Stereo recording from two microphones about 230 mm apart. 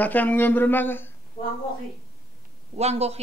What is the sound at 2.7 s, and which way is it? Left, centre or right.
Speech, right.